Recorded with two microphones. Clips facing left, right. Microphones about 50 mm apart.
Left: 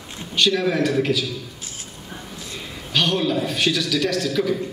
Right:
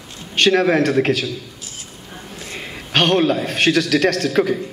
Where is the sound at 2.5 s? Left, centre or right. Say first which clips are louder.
Right 5 dB; right.